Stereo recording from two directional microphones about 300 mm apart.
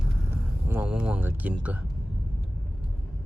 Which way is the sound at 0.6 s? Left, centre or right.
Centre.